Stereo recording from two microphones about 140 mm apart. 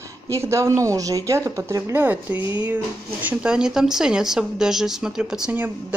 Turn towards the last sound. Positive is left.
turn(degrees=-10)  # may be behind; listen again after turning